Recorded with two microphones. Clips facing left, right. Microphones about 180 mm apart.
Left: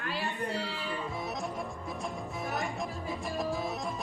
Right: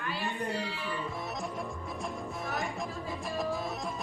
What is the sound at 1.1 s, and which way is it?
Music, centre (ahead or behind).